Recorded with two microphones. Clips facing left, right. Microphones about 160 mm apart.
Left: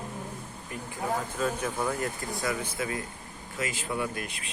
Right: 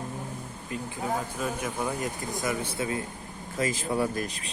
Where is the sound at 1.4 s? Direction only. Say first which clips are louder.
Left 1 dB; 10° right (ahead or behind); by 3.0 s 30° right (ahead or behind).